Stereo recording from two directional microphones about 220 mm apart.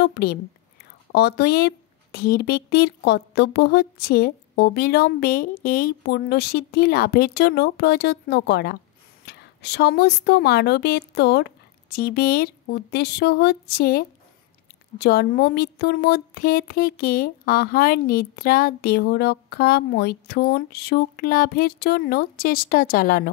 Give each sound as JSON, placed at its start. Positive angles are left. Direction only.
{"t": 0.0, "sound": "a woman's voice", "side_deg": 50}